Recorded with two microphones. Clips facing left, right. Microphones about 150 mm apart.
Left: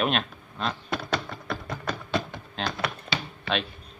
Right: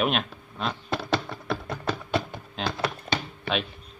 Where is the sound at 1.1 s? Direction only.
30° right (ahead or behind).